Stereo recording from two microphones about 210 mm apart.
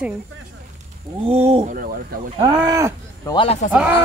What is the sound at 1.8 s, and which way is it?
Speech, 45° right (ahead or behind).